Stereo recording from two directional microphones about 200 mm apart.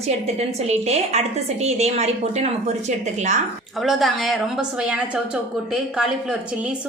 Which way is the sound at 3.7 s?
Centre (ahead or behind).